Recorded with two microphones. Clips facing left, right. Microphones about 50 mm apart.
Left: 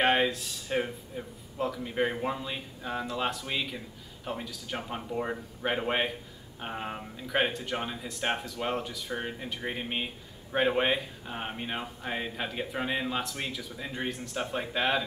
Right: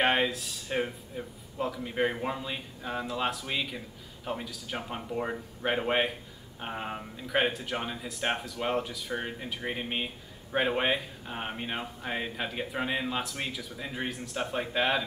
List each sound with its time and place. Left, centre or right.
0.0 s speech: centre